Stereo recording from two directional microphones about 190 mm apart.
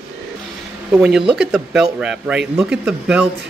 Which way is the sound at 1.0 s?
5° right (ahead or behind).